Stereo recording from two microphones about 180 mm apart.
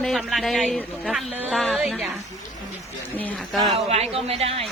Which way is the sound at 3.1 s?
5° left (ahead or behind).